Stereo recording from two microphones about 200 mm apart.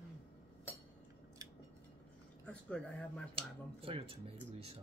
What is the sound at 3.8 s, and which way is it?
Speech, 25° right (ahead or behind).